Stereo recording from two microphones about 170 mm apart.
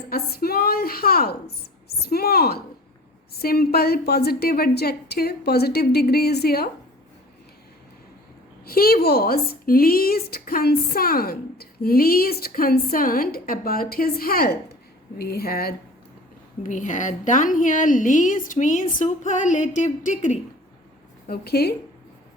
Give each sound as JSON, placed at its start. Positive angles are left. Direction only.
{"t": 0.1, "sound": "a woman's voice", "side_deg": 65}
{"t": 8.6, "sound": "speech", "side_deg": 60}
{"t": 16.6, "sound": "a woman's voice", "side_deg": 45}
{"t": 21.2, "sound": "a woman's voice", "side_deg": 70}